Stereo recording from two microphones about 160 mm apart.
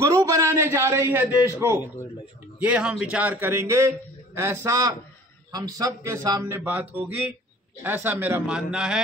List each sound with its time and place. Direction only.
0.0 s a man's voice: 20° right (ahead or behind)
2.6 s a man's voice: 5° right (ahead or behind)